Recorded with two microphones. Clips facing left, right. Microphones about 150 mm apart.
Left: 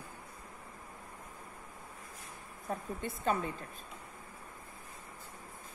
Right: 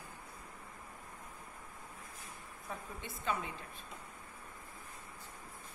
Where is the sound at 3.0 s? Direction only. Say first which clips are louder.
Left 5 dB; 45° left (ahead or behind).